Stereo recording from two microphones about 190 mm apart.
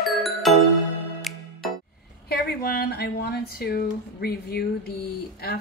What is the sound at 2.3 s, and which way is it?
Speech, 55° left (ahead or behind).